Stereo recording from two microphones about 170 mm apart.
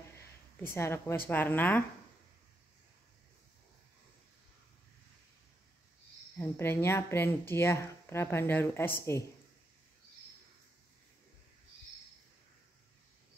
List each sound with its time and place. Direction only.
0.2 s a sound: 15° left (ahead or behind)
1.2 s speech: 10° left (ahead or behind)
6.3 s speech: 15° left (ahead or behind)